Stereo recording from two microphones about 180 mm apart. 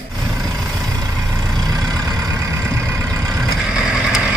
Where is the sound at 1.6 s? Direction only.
20° right (ahead or behind).